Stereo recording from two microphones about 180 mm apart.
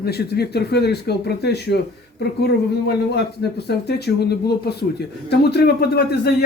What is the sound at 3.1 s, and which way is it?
Speech, 65° left (ahead or behind).